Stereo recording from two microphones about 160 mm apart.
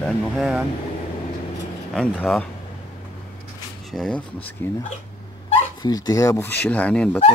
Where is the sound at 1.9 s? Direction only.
5° left (ahead or behind).